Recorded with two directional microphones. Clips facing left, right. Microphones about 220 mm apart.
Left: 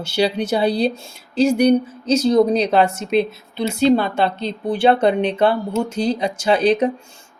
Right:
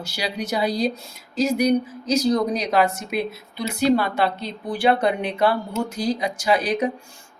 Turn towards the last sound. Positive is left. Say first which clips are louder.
# left 5 dB
turn(degrees=30)  # may be behind; listen again after turning